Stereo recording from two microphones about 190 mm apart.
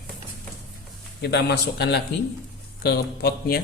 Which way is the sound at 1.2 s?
60° left (ahead or behind).